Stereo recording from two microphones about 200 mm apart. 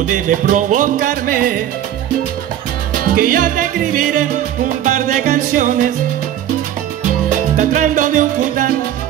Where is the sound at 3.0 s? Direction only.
45° right (ahead or behind).